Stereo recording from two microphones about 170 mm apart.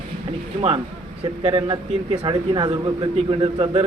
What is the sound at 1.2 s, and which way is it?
A man's voice, 35° right (ahead or behind).